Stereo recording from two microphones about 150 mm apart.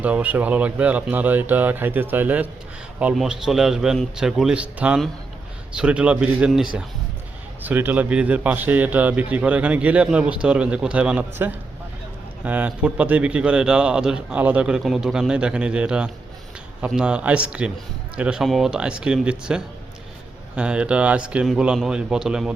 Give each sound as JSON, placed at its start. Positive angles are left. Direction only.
{"t": 0.0, "sound": "a man's voice", "side_deg": -10}